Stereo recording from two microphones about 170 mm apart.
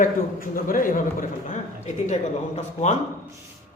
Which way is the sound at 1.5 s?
45° left (ahead or behind).